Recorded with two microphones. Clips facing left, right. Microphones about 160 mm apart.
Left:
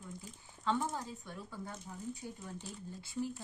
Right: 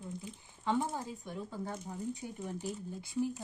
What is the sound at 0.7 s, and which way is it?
Speech, 15° right (ahead or behind).